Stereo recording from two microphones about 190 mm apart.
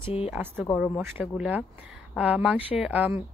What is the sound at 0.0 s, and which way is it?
Speech, 30° left (ahead or behind).